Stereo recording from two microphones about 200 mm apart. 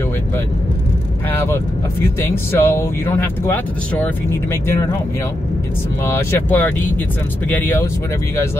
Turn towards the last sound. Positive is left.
turn(degrees=10)  # may be behind; listen again after turning